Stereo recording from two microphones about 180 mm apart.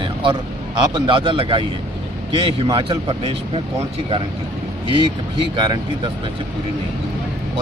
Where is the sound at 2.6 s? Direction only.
30° right (ahead or behind).